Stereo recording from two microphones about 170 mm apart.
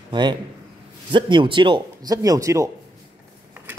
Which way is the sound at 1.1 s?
30° right (ahead or behind).